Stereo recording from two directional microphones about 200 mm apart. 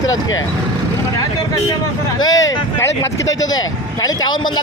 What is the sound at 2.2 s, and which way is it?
Speech, 20° left (ahead or behind).